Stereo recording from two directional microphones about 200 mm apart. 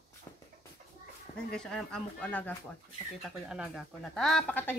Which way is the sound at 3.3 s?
5° right (ahead or behind).